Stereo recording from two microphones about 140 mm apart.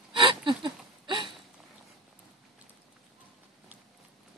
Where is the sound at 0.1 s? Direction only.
35° right (ahead or behind).